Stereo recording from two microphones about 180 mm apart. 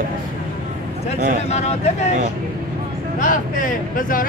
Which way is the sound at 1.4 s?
40° left (ahead or behind).